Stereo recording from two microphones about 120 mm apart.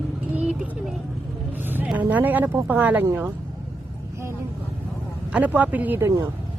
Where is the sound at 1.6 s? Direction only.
15° right (ahead or behind).